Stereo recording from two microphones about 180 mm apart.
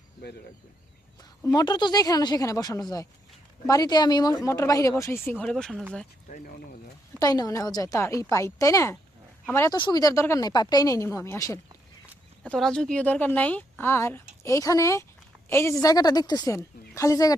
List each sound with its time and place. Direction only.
1.5 s a woman's voice: 25° left (ahead or behind)
5.5 s speech: centre (ahead or behind)
7.2 s speech: 20° left (ahead or behind)
12.4 s a woman's voice: 5° left (ahead or behind)